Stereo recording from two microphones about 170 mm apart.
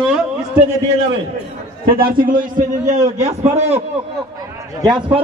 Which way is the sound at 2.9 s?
45° right (ahead or behind).